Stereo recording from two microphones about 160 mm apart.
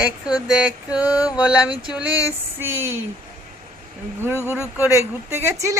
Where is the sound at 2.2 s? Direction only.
15° right (ahead or behind).